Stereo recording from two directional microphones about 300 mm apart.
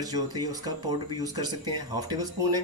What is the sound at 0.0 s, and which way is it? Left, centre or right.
Speech, centre.